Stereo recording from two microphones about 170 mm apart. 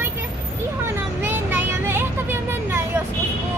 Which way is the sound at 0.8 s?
15° right (ahead or behind).